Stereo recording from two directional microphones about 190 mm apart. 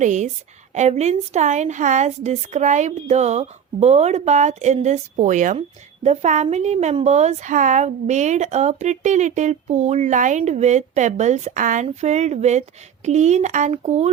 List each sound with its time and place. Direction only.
0.0 s a woman's voice: 40° right (ahead or behind)